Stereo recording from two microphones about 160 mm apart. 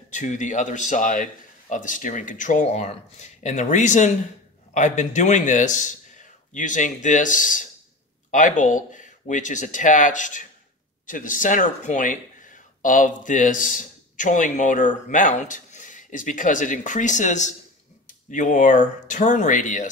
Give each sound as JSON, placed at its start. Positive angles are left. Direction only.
{"t": 0.1, "sound": "speech", "side_deg": 50}